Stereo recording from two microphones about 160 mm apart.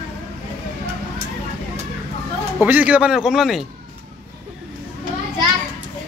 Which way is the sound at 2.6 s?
10° right (ahead or behind).